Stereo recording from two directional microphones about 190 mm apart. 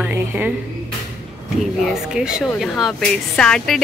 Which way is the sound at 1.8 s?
5° right (ahead or behind).